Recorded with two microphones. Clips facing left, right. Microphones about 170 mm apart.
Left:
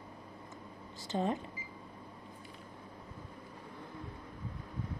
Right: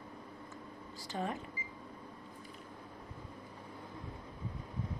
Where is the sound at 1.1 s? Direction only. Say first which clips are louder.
Left 5 dB; 25° left (ahead or behind).